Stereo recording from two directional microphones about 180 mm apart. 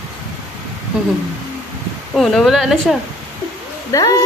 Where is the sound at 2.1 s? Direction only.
Centre (ahead or behind).